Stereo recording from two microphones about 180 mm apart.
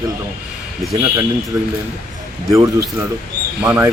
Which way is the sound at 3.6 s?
10° right (ahead or behind).